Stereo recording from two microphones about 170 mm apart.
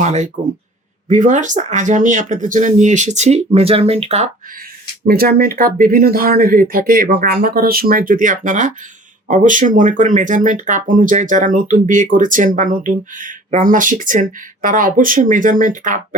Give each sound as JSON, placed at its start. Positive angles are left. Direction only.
{"t": 0.0, "sound": "speech", "side_deg": -40}
{"t": 5.0, "sound": "speech", "side_deg": -60}